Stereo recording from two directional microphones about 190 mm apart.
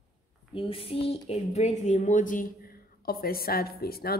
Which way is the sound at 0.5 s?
30° left (ahead or behind).